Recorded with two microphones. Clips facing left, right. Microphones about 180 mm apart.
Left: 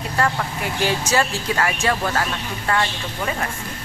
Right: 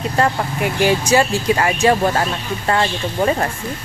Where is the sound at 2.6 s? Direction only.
30° right (ahead or behind).